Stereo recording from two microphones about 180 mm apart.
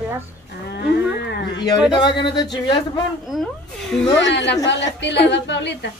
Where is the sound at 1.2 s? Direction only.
70° left (ahead or behind).